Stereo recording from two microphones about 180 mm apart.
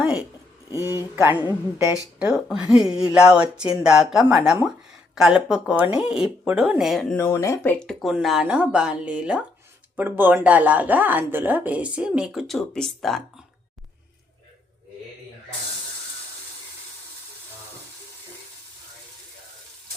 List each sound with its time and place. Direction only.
0.0 s a sound: 5° right (ahead or behind)
0.7 s speech: 15° right (ahead or behind); by 7.2 s centre (ahead or behind)
7.2 s speech: 15° left (ahead or behind)